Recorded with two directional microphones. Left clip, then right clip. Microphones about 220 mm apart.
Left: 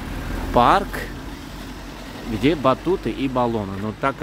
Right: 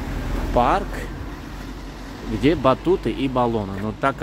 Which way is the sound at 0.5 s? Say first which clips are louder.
Left 3 dB; 25° left (ahead or behind).